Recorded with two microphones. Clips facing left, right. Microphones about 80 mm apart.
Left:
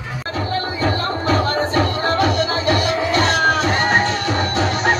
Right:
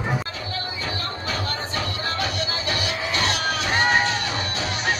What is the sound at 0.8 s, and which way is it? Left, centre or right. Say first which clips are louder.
Music: left 12 dB; left.